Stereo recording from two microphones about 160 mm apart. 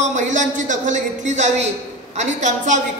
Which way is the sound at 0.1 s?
50° right (ahead or behind).